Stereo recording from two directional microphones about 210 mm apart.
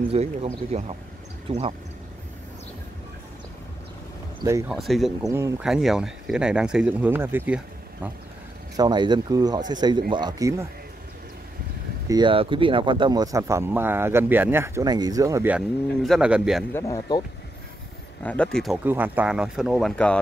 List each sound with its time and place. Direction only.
0.1 s speech: 30° right (ahead or behind)
4.4 s speech: 15° right (ahead or behind)
4.7 s speech: centre (ahead or behind)
8.7 s speech: 20° right (ahead or behind)
12.1 s speech: 20° right (ahead or behind); by 16.6 s 5° right (ahead or behind)
16.7 s speech: 15° left (ahead or behind)
18.2 s speech: 5° left (ahead or behind)